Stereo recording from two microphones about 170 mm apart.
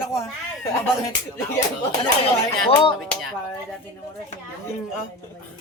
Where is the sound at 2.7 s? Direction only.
30° left (ahead or behind).